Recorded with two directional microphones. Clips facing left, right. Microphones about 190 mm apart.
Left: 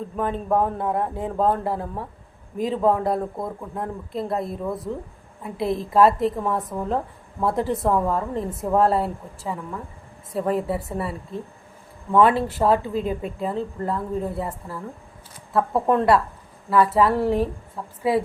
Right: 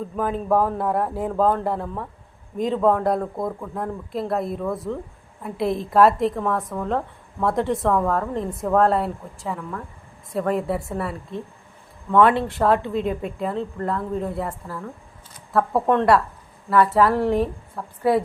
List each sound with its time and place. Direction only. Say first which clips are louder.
0.2 s speech: right 1 dB; centre (ahead or behind)
6.6 s speech: even; 20° left (ahead or behind)
6.8 s speech: right 1 dB; 5° left (ahead or behind)
15.5 s speech: right 1 dB; 5° left (ahead or behind)